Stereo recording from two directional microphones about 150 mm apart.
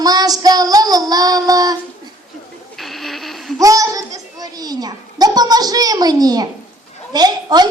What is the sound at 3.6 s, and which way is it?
A child's voice, 20° right (ahead or behind).